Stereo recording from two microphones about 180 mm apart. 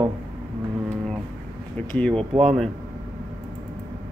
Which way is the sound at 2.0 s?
5° left (ahead or behind).